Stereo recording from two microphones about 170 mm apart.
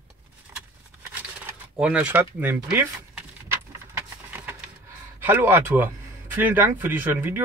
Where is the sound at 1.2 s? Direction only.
10° right (ahead or behind).